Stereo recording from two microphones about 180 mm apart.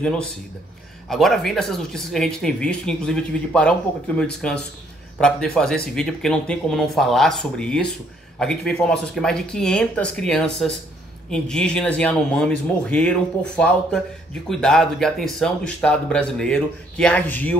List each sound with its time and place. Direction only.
0.0 s speech: 5° left (ahead or behind)